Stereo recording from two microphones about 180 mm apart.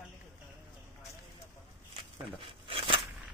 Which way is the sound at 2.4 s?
30° right (ahead or behind).